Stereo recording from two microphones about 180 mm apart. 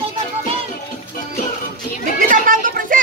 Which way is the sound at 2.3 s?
45° right (ahead or behind).